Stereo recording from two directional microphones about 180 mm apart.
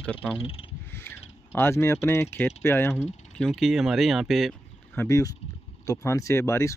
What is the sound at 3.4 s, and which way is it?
Speech, centre (ahead or behind).